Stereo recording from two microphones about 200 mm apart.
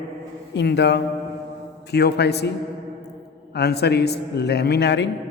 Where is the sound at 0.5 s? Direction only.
60° left (ahead or behind).